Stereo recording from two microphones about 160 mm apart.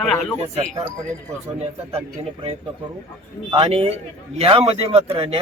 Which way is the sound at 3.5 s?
40° right (ahead or behind).